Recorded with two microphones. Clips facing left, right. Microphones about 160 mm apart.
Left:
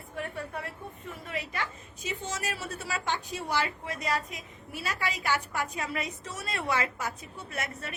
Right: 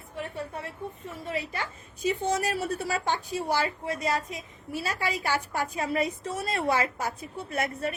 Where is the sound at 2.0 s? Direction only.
35° right (ahead or behind).